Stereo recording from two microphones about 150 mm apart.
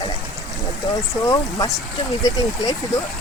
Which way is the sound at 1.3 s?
25° left (ahead or behind).